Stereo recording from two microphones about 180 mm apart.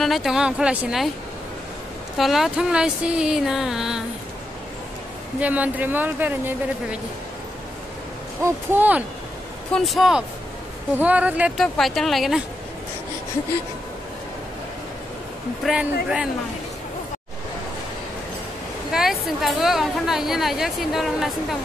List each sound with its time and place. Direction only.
0.0 s a woman's voice: centre (ahead or behind)
2.1 s a woman's voice: centre (ahead or behind)
5.4 s speech: 10° right (ahead or behind)
8.4 s speech: 15° right (ahead or behind)
9.7 s a woman's voice: centre (ahead or behind)
15.6 s a woman's voice: 5° right (ahead or behind)
18.9 s a woman's voice: centre (ahead or behind)